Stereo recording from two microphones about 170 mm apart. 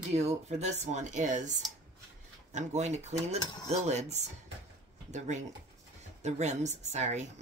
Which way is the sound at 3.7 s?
40° right (ahead or behind).